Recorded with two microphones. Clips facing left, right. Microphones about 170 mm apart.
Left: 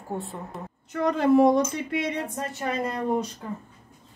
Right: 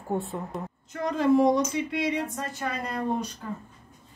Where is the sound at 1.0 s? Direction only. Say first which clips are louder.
Left 2 dB; 60° left (ahead or behind).